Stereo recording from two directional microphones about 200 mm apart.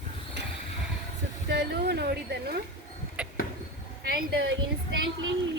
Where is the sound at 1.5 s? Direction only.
55° right (ahead or behind).